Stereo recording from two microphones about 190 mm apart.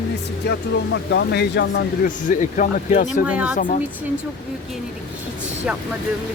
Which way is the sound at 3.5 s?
40° left (ahead or behind).